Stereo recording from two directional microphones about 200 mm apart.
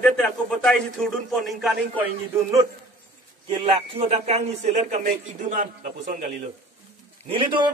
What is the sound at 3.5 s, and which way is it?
A man's voice, 25° right (ahead or behind).